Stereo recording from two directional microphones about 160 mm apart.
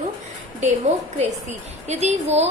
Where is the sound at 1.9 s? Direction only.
45° right (ahead or behind).